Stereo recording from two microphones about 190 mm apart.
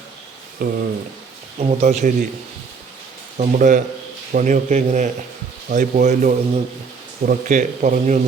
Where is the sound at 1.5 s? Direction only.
35° right (ahead or behind).